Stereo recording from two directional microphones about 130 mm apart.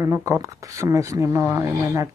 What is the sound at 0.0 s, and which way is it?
Speech, 25° right (ahead or behind).